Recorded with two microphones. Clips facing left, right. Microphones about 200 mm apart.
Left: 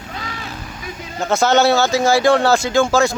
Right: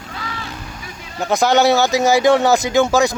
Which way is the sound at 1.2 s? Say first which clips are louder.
Even; 15° right (ahead or behind).